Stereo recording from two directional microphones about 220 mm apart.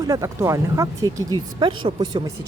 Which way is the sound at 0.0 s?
15° right (ahead or behind).